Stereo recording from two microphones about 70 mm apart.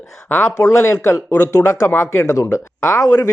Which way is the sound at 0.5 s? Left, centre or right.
Left.